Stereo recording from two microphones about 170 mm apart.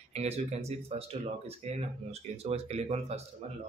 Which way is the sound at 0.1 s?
40° right (ahead or behind).